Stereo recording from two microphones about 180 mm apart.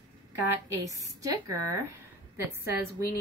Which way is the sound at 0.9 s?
20° right (ahead or behind).